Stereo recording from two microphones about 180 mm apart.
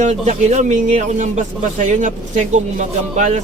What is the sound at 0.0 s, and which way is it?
A man's voice, 40° right (ahead or behind).